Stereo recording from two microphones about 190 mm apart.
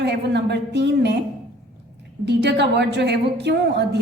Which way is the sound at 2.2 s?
65° right (ahead or behind).